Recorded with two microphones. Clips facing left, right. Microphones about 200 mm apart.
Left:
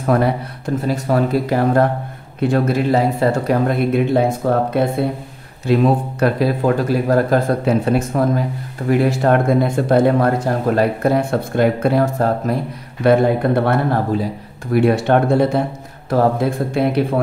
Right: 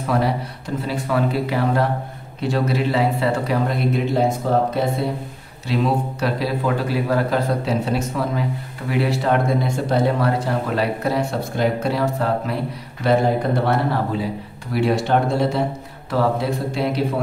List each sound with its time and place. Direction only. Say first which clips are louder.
0.0 s speech: left 4 dB; 50° left (ahead or behind)
5.7 s speech: left 6 dB; 50° left (ahead or behind)
13.0 s speech: left 4 dB; 55° left (ahead or behind)